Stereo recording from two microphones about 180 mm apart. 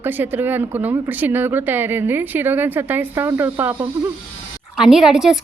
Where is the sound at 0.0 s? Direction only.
10° right (ahead or behind).